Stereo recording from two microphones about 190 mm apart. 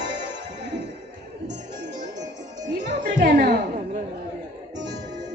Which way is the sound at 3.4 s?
45° right (ahead or behind).